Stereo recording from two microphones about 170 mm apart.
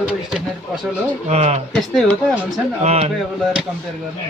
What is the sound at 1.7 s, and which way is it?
Speech, 5° left (ahead or behind).